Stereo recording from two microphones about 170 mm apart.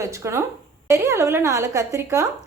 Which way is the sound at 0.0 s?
15° right (ahead or behind).